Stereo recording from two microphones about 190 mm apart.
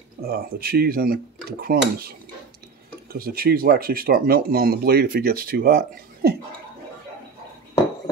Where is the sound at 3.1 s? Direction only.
50° right (ahead or behind).